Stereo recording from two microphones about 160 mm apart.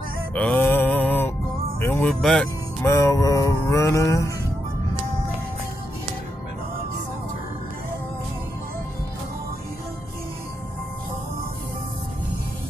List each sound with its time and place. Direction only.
0.3 s music: 10° left (ahead or behind)
1.8 s speech: 15° left (ahead or behind)
2.2 s speech: 5° left (ahead or behind)
2.8 s music: 20° left (ahead or behind)